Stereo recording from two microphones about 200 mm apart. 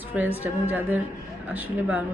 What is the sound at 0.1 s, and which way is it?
Speech, 10° right (ahead or behind).